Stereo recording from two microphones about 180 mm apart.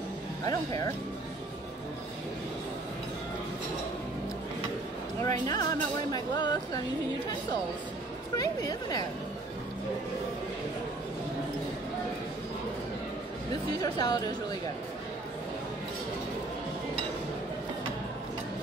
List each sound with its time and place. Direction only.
0.5 s speech: 20° left (ahead or behind)
5.2 s speech: 20° left (ahead or behind)
8.4 s speech: 20° left (ahead or behind)
13.7 s speech: 20° left (ahead or behind)